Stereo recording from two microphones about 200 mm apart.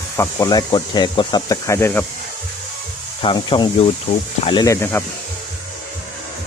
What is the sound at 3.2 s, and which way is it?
Speech, 25° left (ahead or behind).